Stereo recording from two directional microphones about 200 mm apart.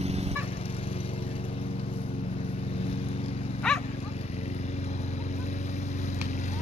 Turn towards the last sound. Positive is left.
turn(degrees=35)  # may be behind; listen again after turning